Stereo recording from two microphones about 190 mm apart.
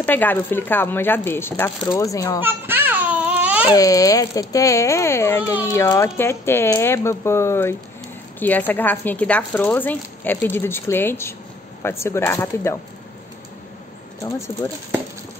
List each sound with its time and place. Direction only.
0.0 s speech: 10° left (ahead or behind)
2.4 s babbling: 10° right (ahead or behind)
3.7 s speech: 20° left (ahead or behind)
14.6 s speech: 10° left (ahead or behind)